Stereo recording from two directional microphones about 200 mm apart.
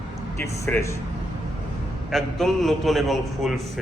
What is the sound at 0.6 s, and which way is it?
Speech, 15° left (ahead or behind).